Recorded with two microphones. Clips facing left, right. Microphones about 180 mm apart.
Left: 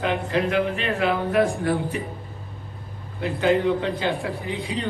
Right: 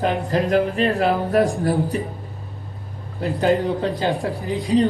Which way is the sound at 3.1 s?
40° right (ahead or behind).